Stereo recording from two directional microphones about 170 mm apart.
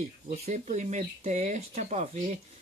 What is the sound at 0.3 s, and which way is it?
Speech, 45° right (ahead or behind).